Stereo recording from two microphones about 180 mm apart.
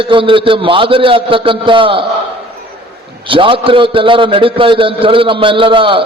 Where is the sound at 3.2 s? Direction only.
30° right (ahead or behind).